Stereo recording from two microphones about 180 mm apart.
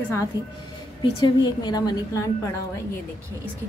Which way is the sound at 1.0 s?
25° left (ahead or behind).